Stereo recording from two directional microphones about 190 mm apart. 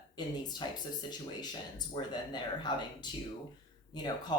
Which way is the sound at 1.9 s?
25° left (ahead or behind).